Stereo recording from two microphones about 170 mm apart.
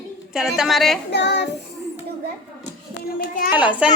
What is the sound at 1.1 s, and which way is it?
Child singing, 85° left.